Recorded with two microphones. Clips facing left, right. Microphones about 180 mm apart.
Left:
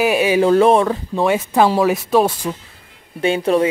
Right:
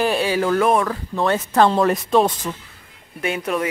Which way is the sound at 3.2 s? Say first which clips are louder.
Left 7 dB; 30° left (ahead or behind).